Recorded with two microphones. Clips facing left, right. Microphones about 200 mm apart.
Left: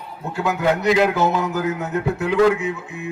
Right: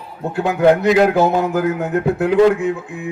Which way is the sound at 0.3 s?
55° right (ahead or behind).